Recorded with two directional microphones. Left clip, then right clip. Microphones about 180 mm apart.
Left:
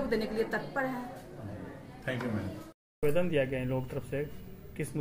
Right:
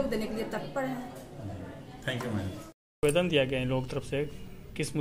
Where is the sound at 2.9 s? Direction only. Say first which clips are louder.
Right 3 dB; 10° right (ahead or behind).